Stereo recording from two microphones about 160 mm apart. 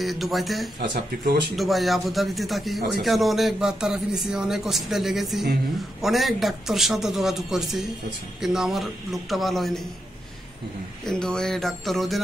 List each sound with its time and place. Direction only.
0.0 s a man's voice: centre (ahead or behind)
0.7 s speech: 90° right
1.6 s a man's voice: centre (ahead or behind)
11.1 s a man's voice: 5° left (ahead or behind)